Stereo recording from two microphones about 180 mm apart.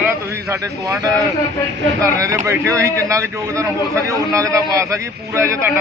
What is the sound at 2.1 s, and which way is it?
A man's voice, 15° right (ahead or behind).